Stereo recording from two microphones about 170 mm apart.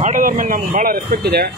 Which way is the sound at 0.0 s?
50° right (ahead or behind).